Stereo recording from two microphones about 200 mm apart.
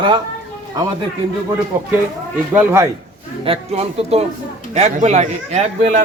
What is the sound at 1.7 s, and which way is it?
Speech, 10° right (ahead or behind).